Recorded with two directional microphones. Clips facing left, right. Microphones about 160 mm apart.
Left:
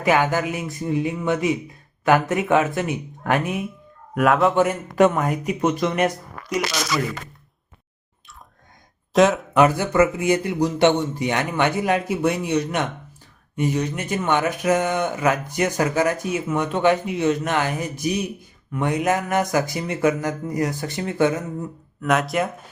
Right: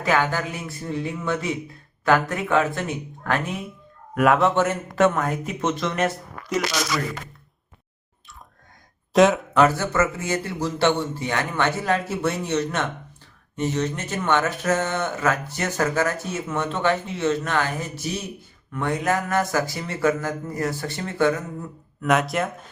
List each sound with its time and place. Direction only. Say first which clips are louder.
0.0 s speech: left 3 dB; 15° left (ahead or behind)
4.2 s speech: left 1 dB; centre (ahead or behind)
4.5 s speech: left 3 dB; 10° left (ahead or behind)
9.1 s speech: even; centre (ahead or behind)
9.6 s speech: left 3 dB; 15° left (ahead or behind)
22.0 s speech: left 1 dB; centre (ahead or behind)